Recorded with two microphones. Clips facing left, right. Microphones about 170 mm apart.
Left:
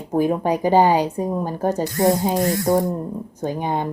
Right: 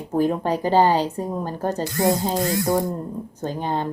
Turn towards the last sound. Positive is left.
turn(degrees=15)  # may be behind; listen again after turning